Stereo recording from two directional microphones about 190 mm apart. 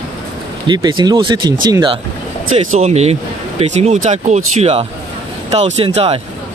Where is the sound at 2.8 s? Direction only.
35° right (ahead or behind).